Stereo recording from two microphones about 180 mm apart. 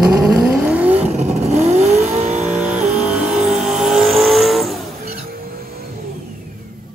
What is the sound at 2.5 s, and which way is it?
Vehicle, 10° right (ahead or behind).